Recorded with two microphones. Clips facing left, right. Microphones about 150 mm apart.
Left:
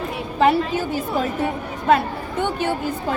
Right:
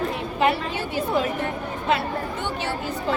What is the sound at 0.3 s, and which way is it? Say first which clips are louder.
Speech: left 6 dB; 40° left (ahead or behind).